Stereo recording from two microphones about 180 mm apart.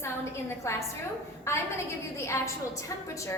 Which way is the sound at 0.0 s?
15° left (ahead or behind).